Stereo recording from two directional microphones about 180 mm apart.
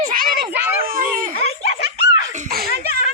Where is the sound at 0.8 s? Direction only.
50° right (ahead or behind).